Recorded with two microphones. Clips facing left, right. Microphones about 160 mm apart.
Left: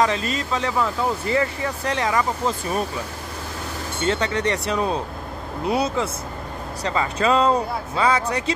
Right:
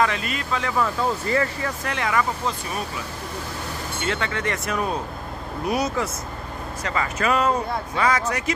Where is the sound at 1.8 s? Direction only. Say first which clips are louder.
Left 2 dB; 30° left (ahead or behind).